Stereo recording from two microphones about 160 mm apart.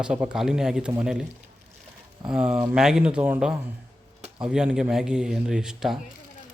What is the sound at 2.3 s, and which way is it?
Speech, 5° right (ahead or behind).